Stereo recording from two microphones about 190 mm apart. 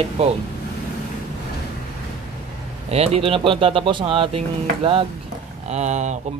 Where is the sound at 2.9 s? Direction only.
35° right (ahead or behind).